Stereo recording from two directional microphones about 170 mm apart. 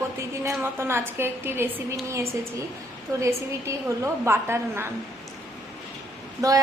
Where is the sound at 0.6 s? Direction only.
15° right (ahead or behind).